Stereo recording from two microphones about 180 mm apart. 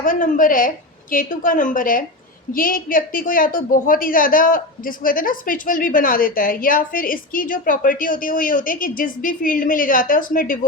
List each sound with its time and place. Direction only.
0.0 s a woman's voice: 50° left (ahead or behind)